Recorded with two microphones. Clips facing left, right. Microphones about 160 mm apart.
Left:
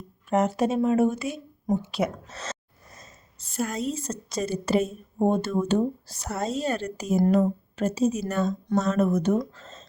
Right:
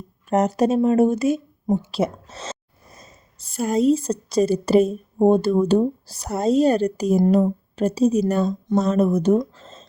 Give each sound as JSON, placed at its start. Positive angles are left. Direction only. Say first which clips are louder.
{"t": 0.3, "sound": "a woman's voice", "louder": "right 4 dB", "side_deg": -40}
{"t": 1.8, "sound": "gasp", "louder": "right 4 dB", "side_deg": -30}
{"t": 3.6, "sound": "a woman's voice", "louder": "right 10 dB", "side_deg": -35}